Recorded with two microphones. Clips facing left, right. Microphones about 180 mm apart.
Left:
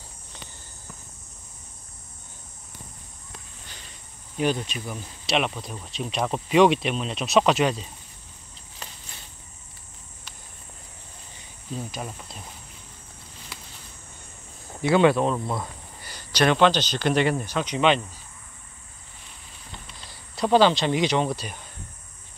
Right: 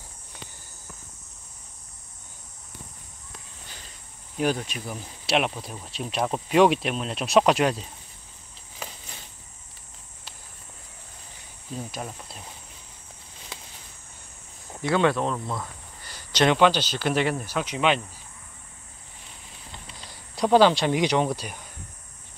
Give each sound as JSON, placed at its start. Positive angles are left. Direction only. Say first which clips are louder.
{"t": 4.4, "sound": "speech", "louder": "left 1 dB", "side_deg": -5}
{"t": 11.9, "sound": "speech", "louder": "even", "side_deg": 0}
{"t": 14.8, "sound": "speech", "louder": "left 4 dB", "side_deg": 5}
{"t": 16.3, "sound": "a sound", "louder": "even", "side_deg": -20}
{"t": 16.5, "sound": "speech", "louder": "even", "side_deg": -10}
{"t": 20.1, "sound": "speech", "louder": "right 1 dB", "side_deg": -10}